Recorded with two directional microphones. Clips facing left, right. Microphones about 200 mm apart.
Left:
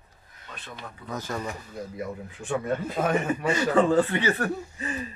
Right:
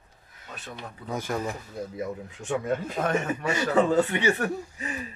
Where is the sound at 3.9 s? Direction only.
10° right (ahead or behind).